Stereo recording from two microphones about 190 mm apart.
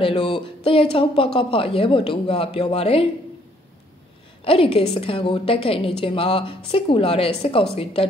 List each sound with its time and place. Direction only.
0.0 s a woman's voice: 30° left (ahead or behind)
4.5 s a woman's voice: 30° left (ahead or behind)